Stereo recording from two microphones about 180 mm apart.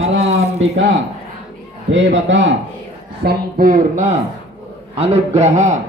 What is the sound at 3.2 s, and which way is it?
Speech, 50° right (ahead or behind).